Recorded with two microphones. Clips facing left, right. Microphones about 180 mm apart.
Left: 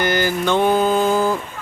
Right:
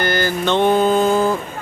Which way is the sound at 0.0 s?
15° left (ahead or behind).